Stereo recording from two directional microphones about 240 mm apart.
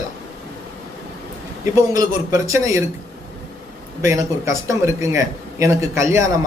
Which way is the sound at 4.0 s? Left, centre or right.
Centre.